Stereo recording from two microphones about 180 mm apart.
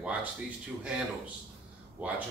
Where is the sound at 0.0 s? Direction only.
10° right (ahead or behind).